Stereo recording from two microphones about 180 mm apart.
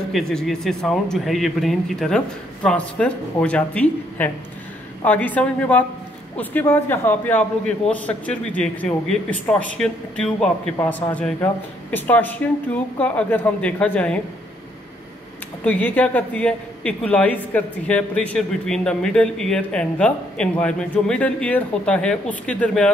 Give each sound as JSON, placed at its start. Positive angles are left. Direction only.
{"t": 0.1, "sound": "a man's voice", "side_deg": 5}
{"t": 15.6, "sound": "a woman's voice", "side_deg": 10}